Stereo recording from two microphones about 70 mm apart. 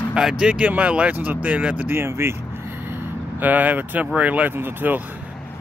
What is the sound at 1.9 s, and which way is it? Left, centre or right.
Speech, right.